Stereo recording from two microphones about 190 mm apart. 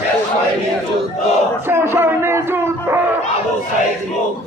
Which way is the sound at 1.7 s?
10° right (ahead or behind).